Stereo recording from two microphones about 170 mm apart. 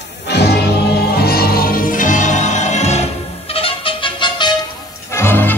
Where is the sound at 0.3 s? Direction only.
75° left (ahead or behind); by 4.6 s 25° left (ahead or behind).